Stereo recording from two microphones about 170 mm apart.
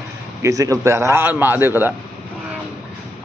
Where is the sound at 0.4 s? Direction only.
20° right (ahead or behind).